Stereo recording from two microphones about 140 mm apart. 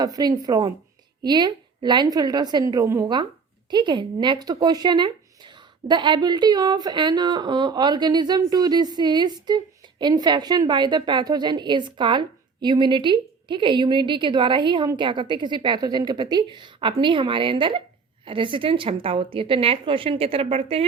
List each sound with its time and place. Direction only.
0.0 s a woman's voice: 30° right (ahead or behind); by 20.8 s 45° right (ahead or behind)